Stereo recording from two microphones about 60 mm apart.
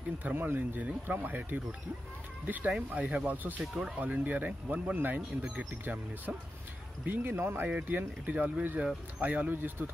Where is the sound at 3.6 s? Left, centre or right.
Centre.